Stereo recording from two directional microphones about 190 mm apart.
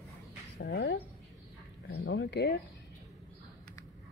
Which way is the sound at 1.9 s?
70° left (ahead or behind).